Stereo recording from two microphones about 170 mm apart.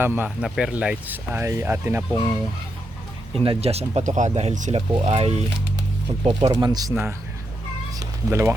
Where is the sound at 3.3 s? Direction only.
30° right (ahead or behind); by 7.1 s 15° right (ahead or behind).